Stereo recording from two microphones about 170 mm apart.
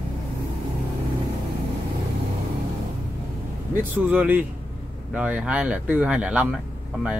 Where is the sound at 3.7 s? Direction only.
10° right (ahead or behind).